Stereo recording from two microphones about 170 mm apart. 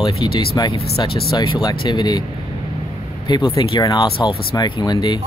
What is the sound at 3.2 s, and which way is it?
Speech, 30° left (ahead or behind).